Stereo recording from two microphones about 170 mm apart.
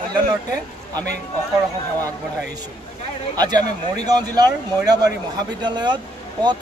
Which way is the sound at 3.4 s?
25° right (ahead or behind).